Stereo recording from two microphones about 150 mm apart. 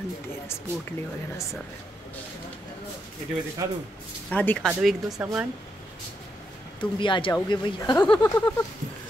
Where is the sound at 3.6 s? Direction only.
20° right (ahead or behind).